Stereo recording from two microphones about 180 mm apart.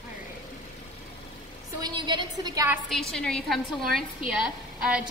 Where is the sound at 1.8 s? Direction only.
25° right (ahead or behind).